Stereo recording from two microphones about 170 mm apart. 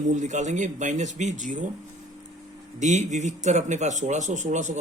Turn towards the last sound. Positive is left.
turn(degrees=-45)  # may be behind; listen again after turning